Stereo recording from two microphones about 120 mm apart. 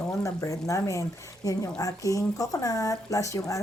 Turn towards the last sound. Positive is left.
turn(degrees=25)  # may be behind; listen again after turning